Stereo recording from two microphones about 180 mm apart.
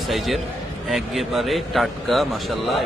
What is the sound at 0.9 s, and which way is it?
A man's voice, centre (ahead or behind).